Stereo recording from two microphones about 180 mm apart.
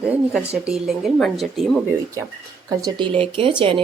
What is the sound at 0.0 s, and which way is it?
Speech, 5° right (ahead or behind).